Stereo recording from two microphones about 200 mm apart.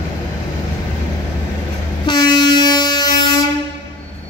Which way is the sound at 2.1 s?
20° left (ahead or behind).